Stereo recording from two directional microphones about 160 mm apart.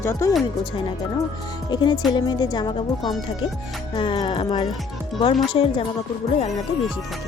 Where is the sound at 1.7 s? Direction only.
25° left (ahead or behind).